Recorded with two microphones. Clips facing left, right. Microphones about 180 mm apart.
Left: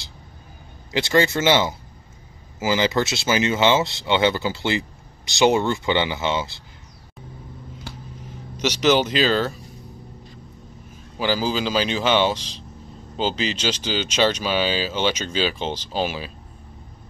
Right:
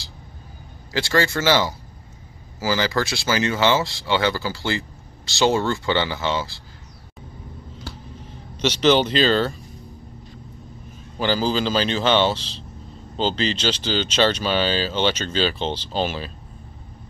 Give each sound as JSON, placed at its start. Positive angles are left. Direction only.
{"t": 0.9, "sound": "speech", "side_deg": 20}
{"t": 8.5, "sound": "speech", "side_deg": 10}
{"t": 11.1, "sound": "speech", "side_deg": 10}